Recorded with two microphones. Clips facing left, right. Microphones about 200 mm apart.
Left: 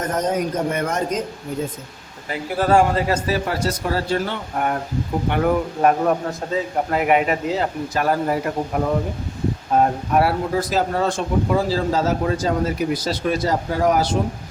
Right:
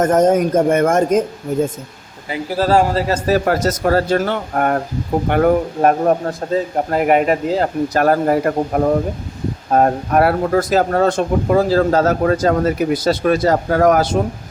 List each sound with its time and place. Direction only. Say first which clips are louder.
0.0 s a man's voice: right 9 dB; 50° right (ahead or behind)
2.6 s a man's voice: right 2 dB; 30° right (ahead or behind)
3.3 s a man's voice: right 7 dB; 45° right (ahead or behind)